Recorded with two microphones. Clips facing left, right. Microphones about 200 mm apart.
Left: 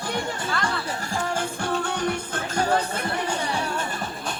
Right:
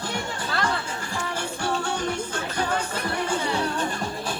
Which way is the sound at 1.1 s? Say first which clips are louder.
Left 4 dB; 50° left (ahead or behind).